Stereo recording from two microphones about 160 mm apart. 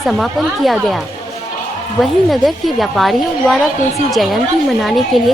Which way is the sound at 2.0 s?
Centre (ahead or behind).